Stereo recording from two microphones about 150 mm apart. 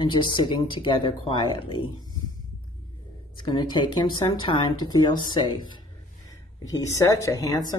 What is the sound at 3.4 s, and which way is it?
Speech, 30° left (ahead or behind).